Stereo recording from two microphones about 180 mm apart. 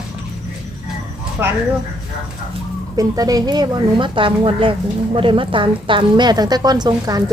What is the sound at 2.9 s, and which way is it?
A woman's voice, 20° right (ahead or behind).